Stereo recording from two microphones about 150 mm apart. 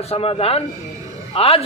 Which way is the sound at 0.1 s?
40° left (ahead or behind).